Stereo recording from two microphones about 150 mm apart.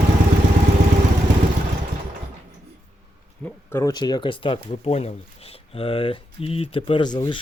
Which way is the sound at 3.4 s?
15° left (ahead or behind).